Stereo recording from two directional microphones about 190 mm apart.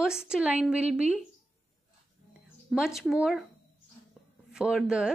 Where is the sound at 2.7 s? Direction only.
Centre (ahead or behind).